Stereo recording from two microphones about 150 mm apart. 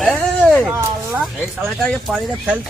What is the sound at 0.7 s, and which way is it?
Speech, 15° right (ahead or behind).